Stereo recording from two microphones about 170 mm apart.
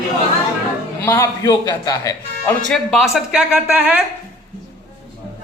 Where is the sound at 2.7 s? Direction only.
Centre (ahead or behind).